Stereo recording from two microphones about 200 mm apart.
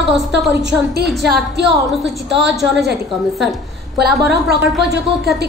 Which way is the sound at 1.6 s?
60° right (ahead or behind).